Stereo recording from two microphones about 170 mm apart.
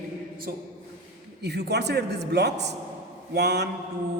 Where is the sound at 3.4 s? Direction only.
75° right (ahead or behind).